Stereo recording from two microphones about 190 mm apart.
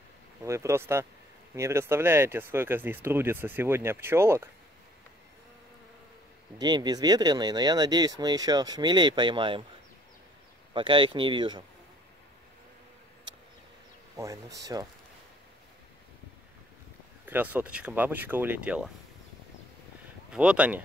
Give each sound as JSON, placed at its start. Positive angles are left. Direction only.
{"t": 0.5, "sound": "speech", "side_deg": -15}
{"t": 6.6, "sound": "speech", "side_deg": -20}
{"t": 10.7, "sound": "speech", "side_deg": -25}
{"t": 14.1, "sound": "speech", "side_deg": -15}
{"t": 17.3, "sound": "speech", "side_deg": -10}
{"t": 20.3, "sound": "speech", "side_deg": -5}